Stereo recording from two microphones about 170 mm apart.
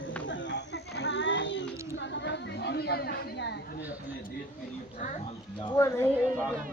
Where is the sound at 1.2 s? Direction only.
90° left.